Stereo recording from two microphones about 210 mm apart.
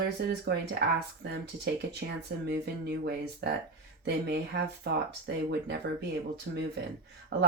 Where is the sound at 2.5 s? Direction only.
50° right (ahead or behind).